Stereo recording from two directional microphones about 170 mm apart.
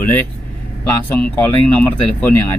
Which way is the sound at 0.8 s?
10° left (ahead or behind).